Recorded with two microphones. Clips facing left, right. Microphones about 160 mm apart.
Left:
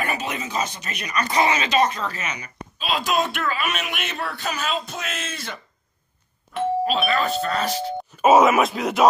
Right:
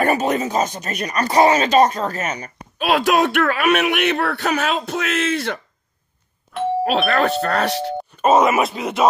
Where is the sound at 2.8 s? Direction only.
65° right (ahead or behind).